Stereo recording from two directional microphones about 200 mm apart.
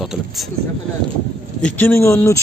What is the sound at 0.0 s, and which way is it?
Speech, centre (ahead or behind).